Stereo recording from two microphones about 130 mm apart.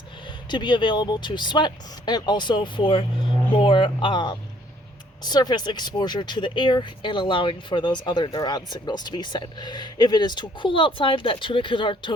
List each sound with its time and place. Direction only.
0.3 s speech: 35° left (ahead or behind)